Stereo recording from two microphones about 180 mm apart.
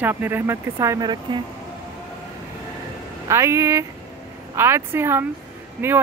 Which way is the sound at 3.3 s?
15° right (ahead or behind).